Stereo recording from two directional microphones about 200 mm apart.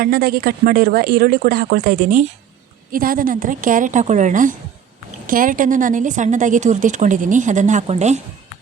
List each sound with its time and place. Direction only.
0.0 s a woman's voice: 45° right (ahead or behind)